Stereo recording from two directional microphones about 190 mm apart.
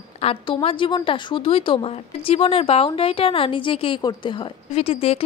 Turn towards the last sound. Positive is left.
turn(degrees=30)  # may be behind; listen again after turning